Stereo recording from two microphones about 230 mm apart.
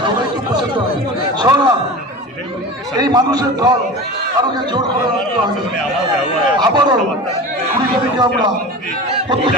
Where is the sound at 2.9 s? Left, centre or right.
Centre.